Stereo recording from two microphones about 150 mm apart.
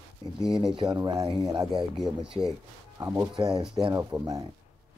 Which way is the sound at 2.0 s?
5° right (ahead or behind).